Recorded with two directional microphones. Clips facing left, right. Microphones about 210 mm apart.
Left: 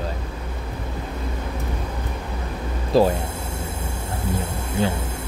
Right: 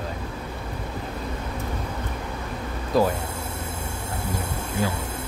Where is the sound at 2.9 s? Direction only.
30° left (ahead or behind).